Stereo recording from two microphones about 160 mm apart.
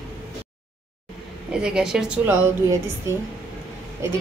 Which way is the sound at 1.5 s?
5° right (ahead or behind).